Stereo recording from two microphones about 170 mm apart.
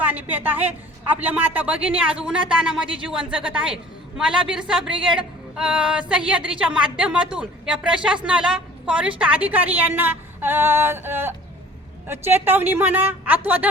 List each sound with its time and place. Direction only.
0.0 s a woman's voice: 10° right (ahead or behind)